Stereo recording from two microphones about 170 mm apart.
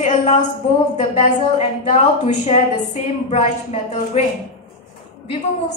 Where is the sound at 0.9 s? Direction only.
40° left (ahead or behind).